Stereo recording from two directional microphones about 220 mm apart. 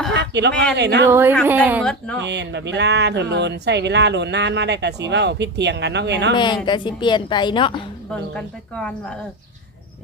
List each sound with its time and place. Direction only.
0.1 s a sound: 50° right (ahead or behind)
0.8 s speech: 50° right (ahead or behind)
1.0 s speech: 10° right (ahead or behind)
1.8 s speech: 5° left (ahead or behind)
2.2 s speech: 50° right (ahead or behind)
6.3 s a woman's voice: 20° left (ahead or behind)
8.1 s speech: 5° left (ahead or behind)